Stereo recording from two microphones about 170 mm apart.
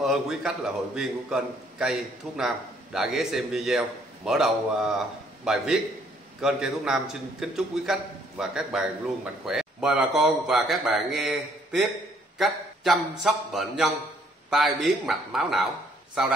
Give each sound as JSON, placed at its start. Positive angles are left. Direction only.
{"t": 0.0, "sound": "a man's voice", "side_deg": -5}